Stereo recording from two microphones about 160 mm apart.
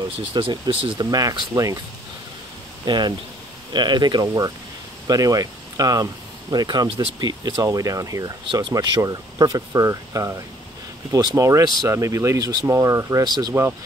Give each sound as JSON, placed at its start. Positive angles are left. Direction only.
{"t": 0.2, "sound": "speech", "side_deg": -30}
{"t": 2.8, "sound": "speech", "side_deg": -25}